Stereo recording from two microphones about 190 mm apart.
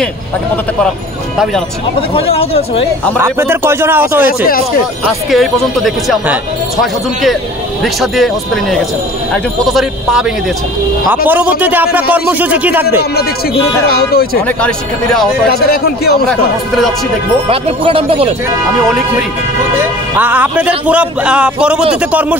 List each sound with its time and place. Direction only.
2.0 s speech: 30° left (ahead or behind)
3.2 s a man's voice: 10° right (ahead or behind)
5.3 s speech: centre (ahead or behind)
7.8 s a man's voice: centre (ahead or behind)
13.8 s speech: 55° left (ahead or behind)
15.4 s speech: 55° left (ahead or behind)
16.3 s speech: centre (ahead or behind)
17.5 s speech: 30° right (ahead or behind)
20.2 s a man's voice: 10° right (ahead or behind)